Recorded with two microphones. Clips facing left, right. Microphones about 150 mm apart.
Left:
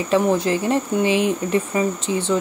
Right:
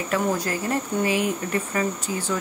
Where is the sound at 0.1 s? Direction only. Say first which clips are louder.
Left 7 dB; 25° left (ahead or behind).